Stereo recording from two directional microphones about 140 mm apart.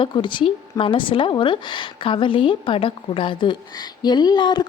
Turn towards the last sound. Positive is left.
turn(degrees=30)  # may be behind; listen again after turning